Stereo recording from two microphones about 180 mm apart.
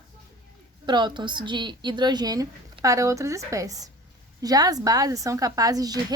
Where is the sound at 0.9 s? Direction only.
25° right (ahead or behind).